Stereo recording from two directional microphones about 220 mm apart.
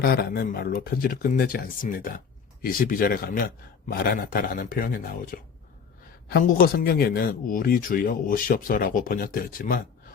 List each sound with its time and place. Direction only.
0.0 s speech: 45° left (ahead or behind)